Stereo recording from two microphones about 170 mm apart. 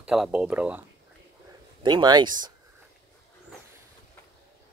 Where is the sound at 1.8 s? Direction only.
25° right (ahead or behind).